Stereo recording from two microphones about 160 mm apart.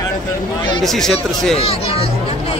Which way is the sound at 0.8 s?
5° left (ahead or behind).